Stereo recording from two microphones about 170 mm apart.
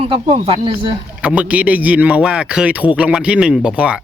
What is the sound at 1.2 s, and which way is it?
Speech, 5° right (ahead or behind).